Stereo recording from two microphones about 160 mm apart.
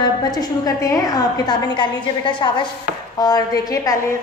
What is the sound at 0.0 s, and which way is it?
A woman's voice, 25° left (ahead or behind).